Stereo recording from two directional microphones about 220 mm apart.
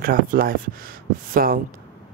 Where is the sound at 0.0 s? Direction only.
40° right (ahead or behind).